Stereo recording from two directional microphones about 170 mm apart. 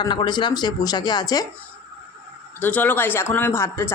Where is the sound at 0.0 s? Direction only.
25° left (ahead or behind).